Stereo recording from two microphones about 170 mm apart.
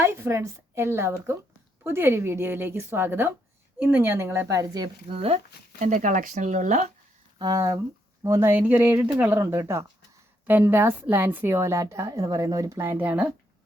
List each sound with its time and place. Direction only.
0.0 s a woman's voice: 15° right (ahead or behind)
5.8 s speech: 50° right (ahead or behind)
7.3 s a woman's voice: 20° right (ahead or behind)